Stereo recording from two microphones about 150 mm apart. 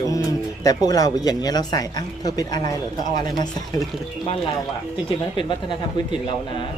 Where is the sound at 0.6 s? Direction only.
25° left (ahead or behind).